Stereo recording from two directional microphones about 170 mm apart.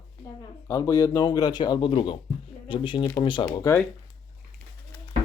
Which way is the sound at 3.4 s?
20° left (ahead or behind).